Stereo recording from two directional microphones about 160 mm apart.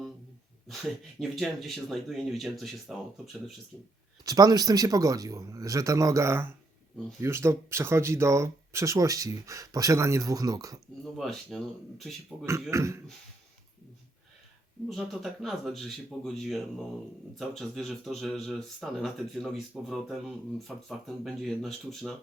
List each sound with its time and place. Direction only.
1.2 s speech: centre (ahead or behind)
4.3 s speech: 25° right (ahead or behind)
11.0 s speech: centre (ahead or behind)
12.7 s speech: 20° right (ahead or behind)
14.8 s speech: centre (ahead or behind)